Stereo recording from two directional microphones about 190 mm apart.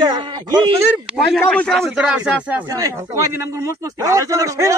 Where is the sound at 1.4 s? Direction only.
5° left (ahead or behind); by 4.7 s 15° right (ahead or behind).